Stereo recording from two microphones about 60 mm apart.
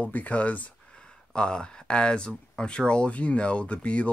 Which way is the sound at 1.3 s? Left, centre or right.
Centre.